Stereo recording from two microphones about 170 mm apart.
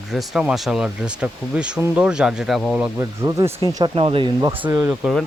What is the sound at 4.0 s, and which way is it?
Speech, 30° right (ahead or behind).